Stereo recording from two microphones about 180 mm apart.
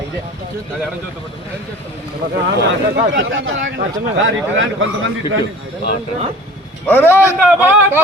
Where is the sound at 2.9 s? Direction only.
75° right (ahead or behind); by 4.6 s 90° right.